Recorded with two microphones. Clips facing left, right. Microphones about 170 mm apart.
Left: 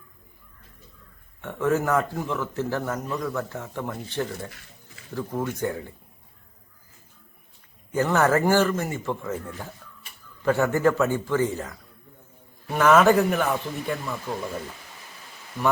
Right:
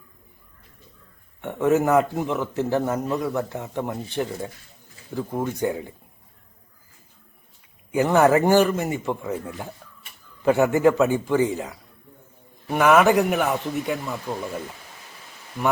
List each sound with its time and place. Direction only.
1.4 s speech: 20° right (ahead or behind)
7.9 s speech: 15° right (ahead or behind)